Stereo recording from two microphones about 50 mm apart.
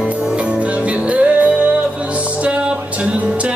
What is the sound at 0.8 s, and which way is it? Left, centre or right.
Music, right.